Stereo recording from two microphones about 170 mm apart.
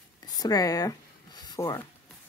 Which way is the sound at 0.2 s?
20° left (ahead or behind).